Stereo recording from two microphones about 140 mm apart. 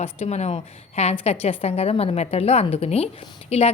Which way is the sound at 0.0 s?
50° left (ahead or behind).